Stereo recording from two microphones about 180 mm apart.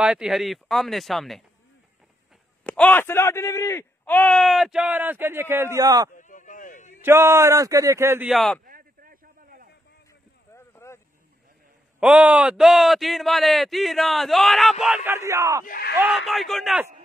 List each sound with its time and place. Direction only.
0.0 s a man's voice: 5° right (ahead or behind)
2.6 s a man's voice: 5° left (ahead or behind); by 6.0 s 20° right (ahead or behind)
6.1 s a sound: 45° left (ahead or behind)
7.0 s speech: 15° right (ahead or behind)
8.3 s a man's voice: centre (ahead or behind)
8.6 s a sound: 55° right (ahead or behind)
10.5 s a sound: 15° left (ahead or behind)
12.0 s a man's voice: 5° right (ahead or behind)
15.0 s speech: 15° right (ahead or behind)
15.6 s speech: 55° left (ahead or behind)
16.0 s a man's voice: centre (ahead or behind)